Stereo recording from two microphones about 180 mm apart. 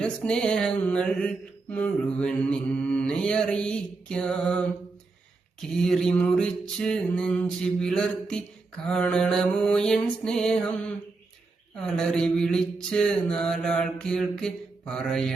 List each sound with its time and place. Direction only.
0.0 s mantra: 5° left (ahead or behind)
5.7 s mantra: centre (ahead or behind)